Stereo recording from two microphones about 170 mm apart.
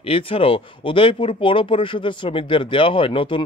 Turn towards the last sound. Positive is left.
turn(degrees=30)  # may be behind; listen again after turning